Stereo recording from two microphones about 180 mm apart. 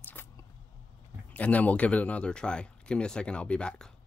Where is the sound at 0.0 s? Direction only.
10° left (ahead or behind).